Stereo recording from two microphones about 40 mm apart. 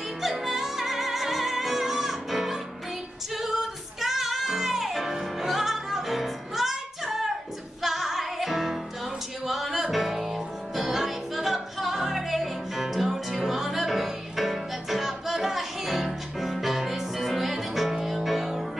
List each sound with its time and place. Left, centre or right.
0.2 s music: centre
4.0 s music: centre